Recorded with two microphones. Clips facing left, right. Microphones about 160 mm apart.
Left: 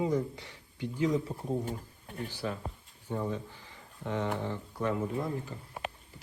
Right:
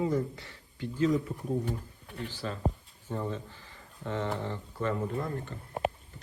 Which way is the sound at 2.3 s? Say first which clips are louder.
Left 1 dB; 15° left (ahead or behind).